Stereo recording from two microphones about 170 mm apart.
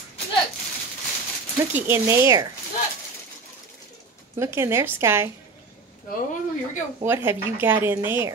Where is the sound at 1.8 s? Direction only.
15° right (ahead or behind).